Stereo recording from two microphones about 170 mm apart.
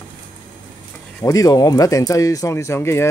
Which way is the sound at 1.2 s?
20° left (ahead or behind).